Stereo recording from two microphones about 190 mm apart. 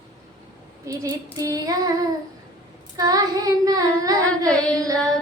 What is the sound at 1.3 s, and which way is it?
Child singing, 20° right (ahead or behind).